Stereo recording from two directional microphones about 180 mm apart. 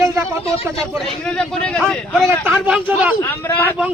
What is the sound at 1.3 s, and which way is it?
Speech, 5° left (ahead or behind).